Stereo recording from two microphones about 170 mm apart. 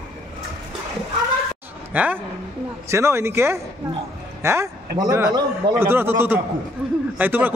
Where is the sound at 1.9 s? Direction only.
10° right (ahead or behind); by 5.7 s 25° right (ahead or behind).